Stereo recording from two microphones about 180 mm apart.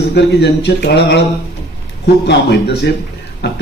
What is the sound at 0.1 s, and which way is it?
A man's voice, 65° left (ahead or behind).